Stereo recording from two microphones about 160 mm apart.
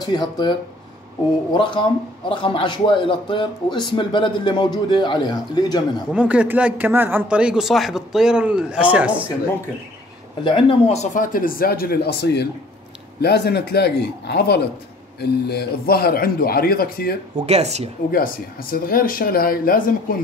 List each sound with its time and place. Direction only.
0.0 s a man's voice: 25° left (ahead or behind)
6.1 s speech: 10° right (ahead or behind)
10.4 s a man's voice: 30° left (ahead or behind)
11.3 s a man's voice: 65° left (ahead or behind)
17.4 s speech: 45° right (ahead or behind)
18.1 s speech: 65° left (ahead or behind)